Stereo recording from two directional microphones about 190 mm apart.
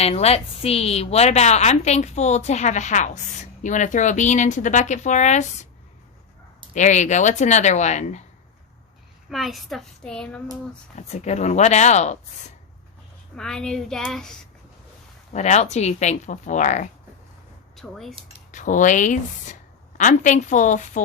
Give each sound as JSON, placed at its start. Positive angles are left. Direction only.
{"t": 0.0, "sound": "a woman's voice", "side_deg": 35}
{"t": 6.7, "sound": "a woman's voice", "side_deg": 40}
{"t": 9.3, "sound": "a child's voice", "side_deg": 0}
{"t": 10.9, "sound": "a woman's voice", "side_deg": 35}
{"t": 13.3, "sound": "a child's voice", "side_deg": 5}
{"t": 15.3, "sound": "a woman's voice", "side_deg": 35}
{"t": 17.7, "sound": "a child's voice", "side_deg": 0}
{"t": 18.5, "sound": "a woman's voice", "side_deg": 40}